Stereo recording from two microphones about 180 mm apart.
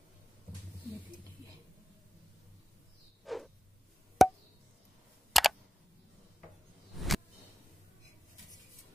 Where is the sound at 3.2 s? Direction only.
Centre (ahead or behind).